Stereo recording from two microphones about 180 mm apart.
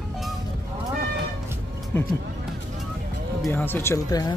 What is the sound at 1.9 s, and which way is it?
Speech, 10° left (ahead or behind).